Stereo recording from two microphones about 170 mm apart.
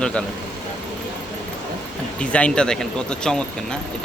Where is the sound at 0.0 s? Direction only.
5° left (ahead or behind).